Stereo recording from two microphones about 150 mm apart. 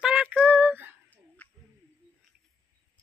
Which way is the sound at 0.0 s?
5° right (ahead or behind).